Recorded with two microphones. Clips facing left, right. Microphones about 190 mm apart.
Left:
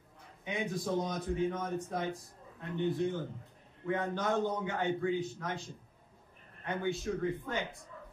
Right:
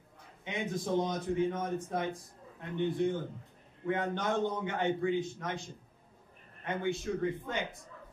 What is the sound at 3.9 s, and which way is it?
A man's voice, 20° right (ahead or behind).